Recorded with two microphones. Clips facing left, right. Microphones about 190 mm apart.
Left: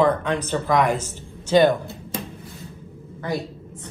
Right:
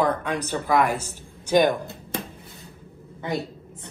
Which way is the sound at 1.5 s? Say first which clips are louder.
Left 3 dB; 15° right (ahead or behind).